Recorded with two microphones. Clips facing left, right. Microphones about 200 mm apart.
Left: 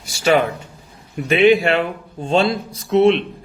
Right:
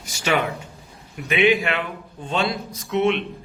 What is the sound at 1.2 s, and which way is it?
A man's voice, 35° left (ahead or behind).